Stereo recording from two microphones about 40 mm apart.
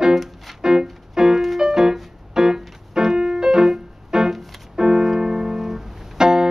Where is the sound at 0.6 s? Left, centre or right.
Centre.